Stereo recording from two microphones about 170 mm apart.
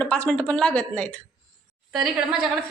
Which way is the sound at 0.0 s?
5° left (ahead or behind).